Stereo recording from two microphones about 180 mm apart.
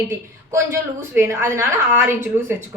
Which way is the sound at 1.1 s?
15° right (ahead or behind).